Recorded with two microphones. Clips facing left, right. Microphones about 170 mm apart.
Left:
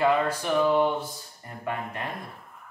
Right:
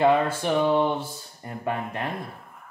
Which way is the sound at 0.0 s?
25° right (ahead or behind).